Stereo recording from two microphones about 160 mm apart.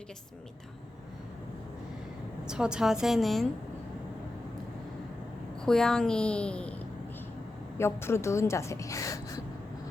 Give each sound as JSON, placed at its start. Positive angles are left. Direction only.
{"t": 2.4, "sound": "a child's voice", "side_deg": -5}
{"t": 5.6, "sound": "a child's voice", "side_deg": 5}